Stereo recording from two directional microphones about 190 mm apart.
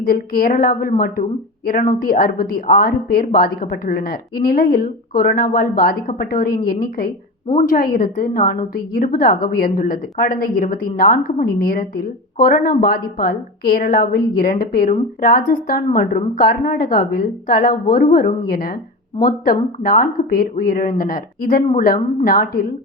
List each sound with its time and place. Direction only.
0.0 s a woman's voice: 50° left (ahead or behind)